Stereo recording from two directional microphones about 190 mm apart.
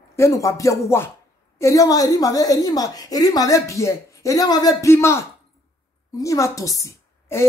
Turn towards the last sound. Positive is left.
turn(degrees=15)  # may be behind; listen again after turning